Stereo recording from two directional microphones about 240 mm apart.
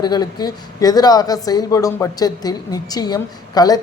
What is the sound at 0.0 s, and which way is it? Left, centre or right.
Speech, centre.